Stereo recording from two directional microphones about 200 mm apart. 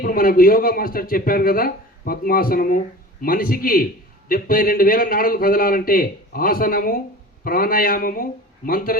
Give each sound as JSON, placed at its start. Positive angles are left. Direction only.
{"t": 0.0, "sound": "speech", "side_deg": 45}